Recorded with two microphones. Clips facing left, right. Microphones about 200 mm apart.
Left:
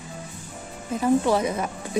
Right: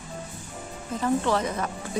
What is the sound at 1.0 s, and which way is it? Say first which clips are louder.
Speech: left 4 dB; 10° left (ahead or behind).